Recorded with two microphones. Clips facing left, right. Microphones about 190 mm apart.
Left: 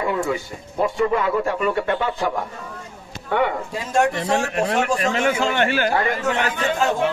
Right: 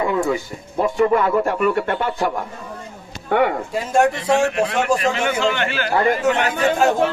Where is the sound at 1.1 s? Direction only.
45° right (ahead or behind).